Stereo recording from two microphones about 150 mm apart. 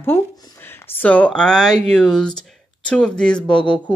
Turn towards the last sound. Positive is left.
turn(degrees=30)  # may be behind; listen again after turning